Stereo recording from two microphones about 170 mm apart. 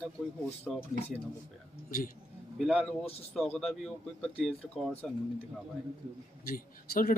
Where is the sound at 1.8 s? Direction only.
55° left (ahead or behind).